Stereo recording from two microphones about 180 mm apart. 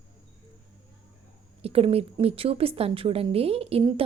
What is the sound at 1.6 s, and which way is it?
A woman's voice, 35° right (ahead or behind).